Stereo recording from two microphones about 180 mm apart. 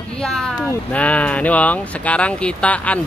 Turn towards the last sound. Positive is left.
turn(degrees=5)  # may be behind; listen again after turning